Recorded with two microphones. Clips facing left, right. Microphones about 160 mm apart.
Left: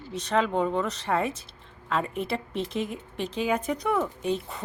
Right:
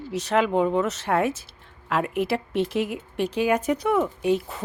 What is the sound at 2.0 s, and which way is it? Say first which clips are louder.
Speech: right 6 dB; 80° right.